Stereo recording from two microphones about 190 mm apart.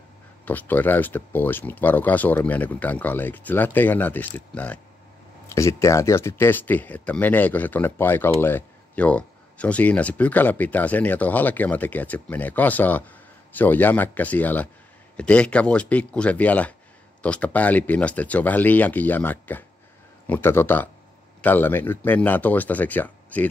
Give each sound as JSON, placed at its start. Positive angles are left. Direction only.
{"t": 0.5, "sound": "speech", "side_deg": 10}
{"t": 5.5, "sound": "speech", "side_deg": 15}